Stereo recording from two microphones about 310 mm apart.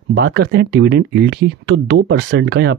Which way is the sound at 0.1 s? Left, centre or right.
Right.